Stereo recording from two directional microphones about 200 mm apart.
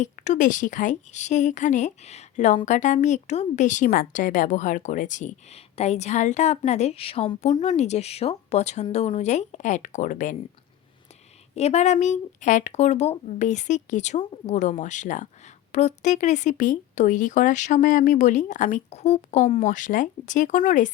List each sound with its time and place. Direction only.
0.0 s a woman's voice: 40° left (ahead or behind)
11.5 s a woman's voice: 35° left (ahead or behind)